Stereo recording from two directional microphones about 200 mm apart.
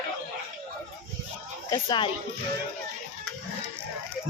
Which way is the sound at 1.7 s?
25° left (ahead or behind).